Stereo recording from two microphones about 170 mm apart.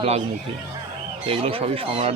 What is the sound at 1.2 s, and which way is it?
Speech, 35° right (ahead or behind).